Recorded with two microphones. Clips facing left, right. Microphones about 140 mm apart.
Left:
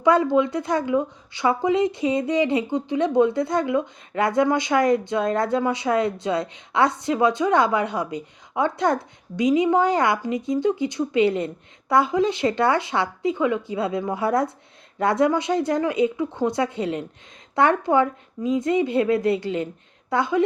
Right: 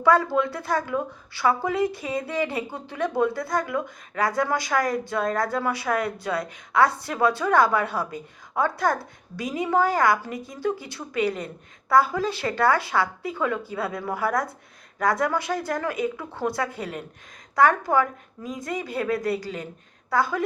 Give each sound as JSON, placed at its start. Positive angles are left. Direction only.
{"t": 0.0, "sound": "a woman's voice", "side_deg": 20}